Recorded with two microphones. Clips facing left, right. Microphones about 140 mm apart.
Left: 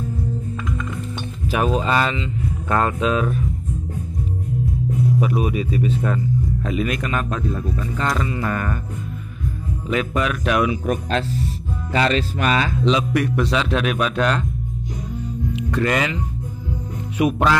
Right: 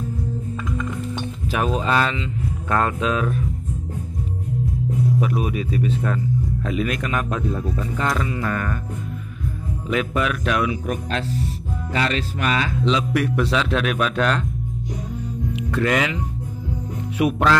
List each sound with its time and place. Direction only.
1.5 s speech: 5° left (ahead or behind)
5.2 s speech: centre (ahead or behind); by 7.9 s 20° right (ahead or behind)
8.0 s speech: centre (ahead or behind)
8.4 s music: 10° left (ahead or behind)
9.8 s speech: centre (ahead or behind)
10.5 s speech: 25° left (ahead or behind)
13.1 s speech: 5° right (ahead or behind)
15.5 s speech: centre (ahead or behind)
17.2 s speech: centre (ahead or behind)